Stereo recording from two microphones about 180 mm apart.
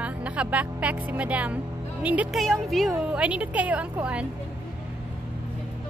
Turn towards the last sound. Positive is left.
turn(degrees=-5)  # may be behind; listen again after turning